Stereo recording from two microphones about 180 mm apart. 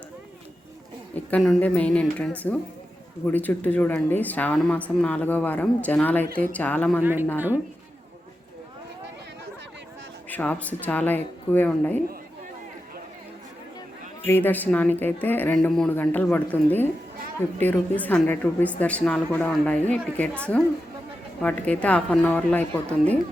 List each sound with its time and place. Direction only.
1.1 s speech: 5° left (ahead or behind)
7.0 s speech: 10° right (ahead or behind)
10.2 s speech: 10° left (ahead or behind)
14.3 s speech: 10° left (ahead or behind)
21.4 s speech: 5° left (ahead or behind)